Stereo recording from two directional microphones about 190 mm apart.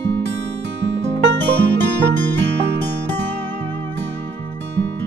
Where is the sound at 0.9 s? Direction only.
65° right (ahead or behind).